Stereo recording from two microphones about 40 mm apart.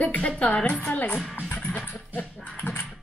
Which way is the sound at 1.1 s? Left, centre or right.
Left.